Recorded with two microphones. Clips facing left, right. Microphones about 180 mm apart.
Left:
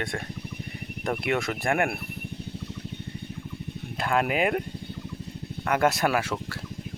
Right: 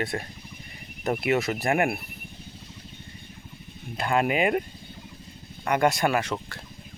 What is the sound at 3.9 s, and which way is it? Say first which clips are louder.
Speech: right 1 dB; centre (ahead or behind).